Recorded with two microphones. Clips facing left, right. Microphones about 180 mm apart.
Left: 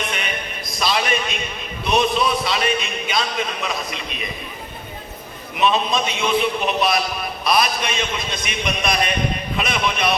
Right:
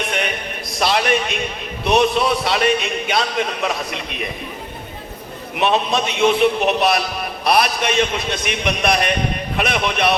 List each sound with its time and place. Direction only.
0.8 s a sound: 60° right (ahead or behind)
1.9 s a man's voice: 65° right (ahead or behind)
5.5 s a man's voice: 65° right (ahead or behind)